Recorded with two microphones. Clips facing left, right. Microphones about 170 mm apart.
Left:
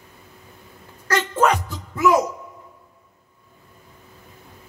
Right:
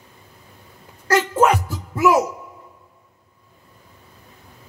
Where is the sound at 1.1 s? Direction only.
5° right (ahead or behind).